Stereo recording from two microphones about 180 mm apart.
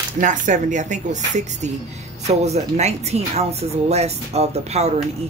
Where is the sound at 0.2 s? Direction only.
45° right (ahead or behind).